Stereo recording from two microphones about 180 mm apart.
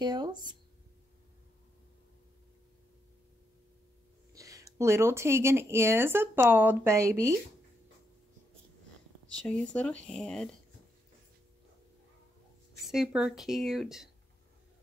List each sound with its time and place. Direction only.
0.0 s speech: 25° right (ahead or behind)
4.3 s speech: 20° right (ahead or behind)
9.3 s speech: 5° left (ahead or behind)
12.8 s speech: centre (ahead or behind)